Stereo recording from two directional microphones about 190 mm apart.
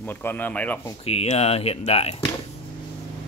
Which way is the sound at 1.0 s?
30° left (ahead or behind).